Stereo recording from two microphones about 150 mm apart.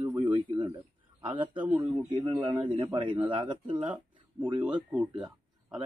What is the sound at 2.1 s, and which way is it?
A man's voice, 30° right (ahead or behind).